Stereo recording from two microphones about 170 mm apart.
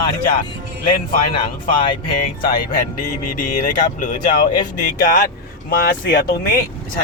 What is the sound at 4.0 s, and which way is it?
A man's voice, 50° left (ahead or behind).